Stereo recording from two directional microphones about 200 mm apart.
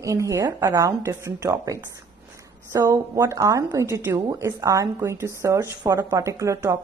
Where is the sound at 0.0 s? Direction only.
15° right (ahead or behind).